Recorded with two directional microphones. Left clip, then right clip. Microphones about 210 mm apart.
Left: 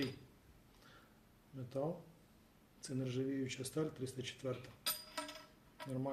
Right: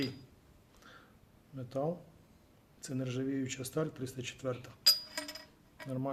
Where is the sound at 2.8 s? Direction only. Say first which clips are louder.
Right 4 dB; 40° right (ahead or behind).